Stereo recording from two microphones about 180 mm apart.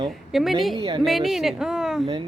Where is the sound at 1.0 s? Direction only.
Centre (ahead or behind).